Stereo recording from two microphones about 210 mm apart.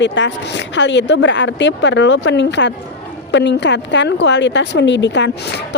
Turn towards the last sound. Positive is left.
turn(degrees=60)  # may be behind; listen again after turning